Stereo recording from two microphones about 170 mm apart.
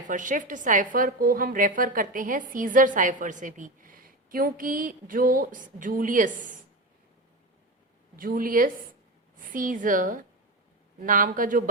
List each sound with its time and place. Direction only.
0.1 s a woman's voice: 50° right (ahead or behind)
8.1 s a woman's voice: 55° right (ahead or behind)